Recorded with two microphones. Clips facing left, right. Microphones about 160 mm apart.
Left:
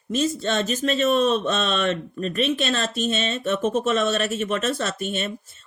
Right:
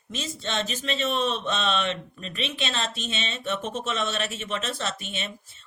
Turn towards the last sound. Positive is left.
turn(degrees=45)  # may be behind; listen again after turning